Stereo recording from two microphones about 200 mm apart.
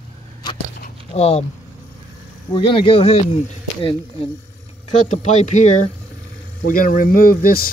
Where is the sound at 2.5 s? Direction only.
25° left (ahead or behind).